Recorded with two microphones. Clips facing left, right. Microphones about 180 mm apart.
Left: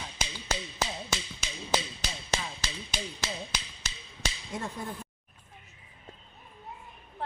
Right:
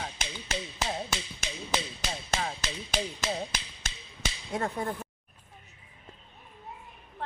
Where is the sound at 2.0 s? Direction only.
55° right (ahead or behind).